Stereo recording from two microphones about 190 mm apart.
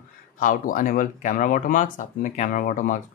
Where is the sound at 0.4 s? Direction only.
45° left (ahead or behind).